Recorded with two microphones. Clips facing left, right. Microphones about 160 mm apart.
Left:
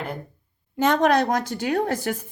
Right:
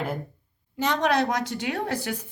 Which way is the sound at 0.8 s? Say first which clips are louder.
Left 4 dB; 50° left (ahead or behind).